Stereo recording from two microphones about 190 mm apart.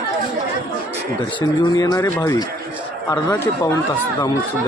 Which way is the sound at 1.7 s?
20° left (ahead or behind).